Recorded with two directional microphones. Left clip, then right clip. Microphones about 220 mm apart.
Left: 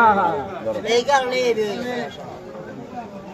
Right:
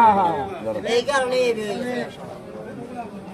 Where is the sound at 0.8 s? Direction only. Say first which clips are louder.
Left 3 dB; centre (ahead or behind).